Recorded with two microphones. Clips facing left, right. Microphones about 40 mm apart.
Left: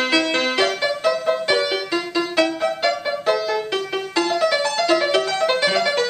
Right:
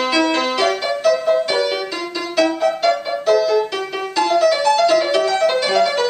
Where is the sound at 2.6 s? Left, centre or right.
Centre.